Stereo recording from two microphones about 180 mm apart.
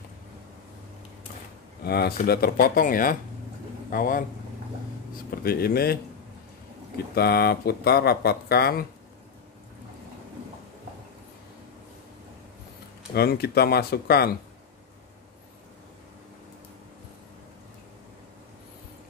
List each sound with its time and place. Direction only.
1.9 s speech: 60° left (ahead or behind)
5.3 s speech: 55° left (ahead or behind)
7.2 s speech: 60° left (ahead or behind)
13.1 s speech: 60° left (ahead or behind)